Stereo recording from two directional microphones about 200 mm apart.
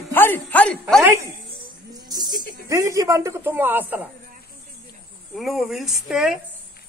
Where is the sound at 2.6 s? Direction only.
15° right (ahead or behind).